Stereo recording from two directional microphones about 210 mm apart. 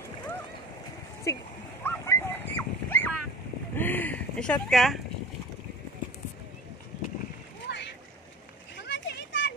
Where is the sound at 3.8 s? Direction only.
10° left (ahead or behind).